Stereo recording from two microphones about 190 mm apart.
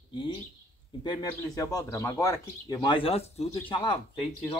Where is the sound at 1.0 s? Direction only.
20° left (ahead or behind).